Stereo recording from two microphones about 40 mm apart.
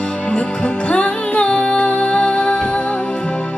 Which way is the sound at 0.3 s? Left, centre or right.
Left.